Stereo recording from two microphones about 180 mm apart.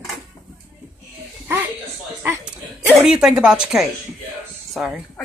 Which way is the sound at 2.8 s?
5° right (ahead or behind).